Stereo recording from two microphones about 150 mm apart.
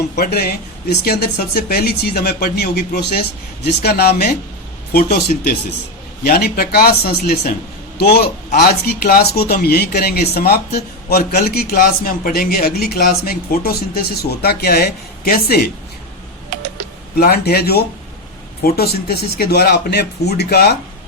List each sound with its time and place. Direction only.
0.2 s speech: 90° left
17.2 s speech: 90° left